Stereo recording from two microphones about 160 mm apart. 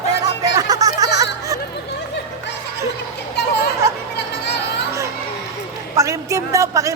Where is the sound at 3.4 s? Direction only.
90° left.